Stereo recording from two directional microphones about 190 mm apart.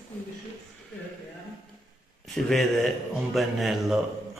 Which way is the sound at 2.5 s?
Centre (ahead or behind).